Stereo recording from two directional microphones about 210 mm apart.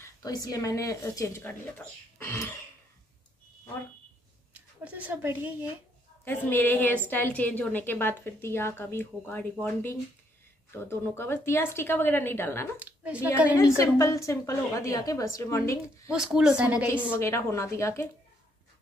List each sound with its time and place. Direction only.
0.0 s a woman's voice: 15° left (ahead or behind)
4.6 s speech: 5° right (ahead or behind)
6.2 s a woman's voice: 10° left (ahead or behind)
12.8 s a woman's voice: 5° right (ahead or behind)
13.6 s a woman's voice: 15° left (ahead or behind)
16.1 s speech: 5° right (ahead or behind)
16.8 s a woman's voice: 10° left (ahead or behind)